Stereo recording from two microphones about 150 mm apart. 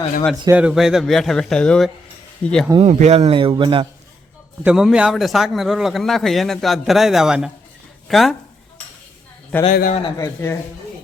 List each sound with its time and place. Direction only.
0.4 s speech: 10° right (ahead or behind)
2.8 s a man's voice: 50° right (ahead or behind); by 3.8 s 35° right (ahead or behind)
4.6 s speech: 5° right (ahead or behind)
9.5 s a man's voice: 10° left (ahead or behind)
9.9 s a man's voice: 35° left (ahead or behind)
10.2 s a man's voice: 20° left (ahead or behind)